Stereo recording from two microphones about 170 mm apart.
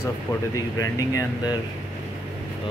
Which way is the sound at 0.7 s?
20° left (ahead or behind).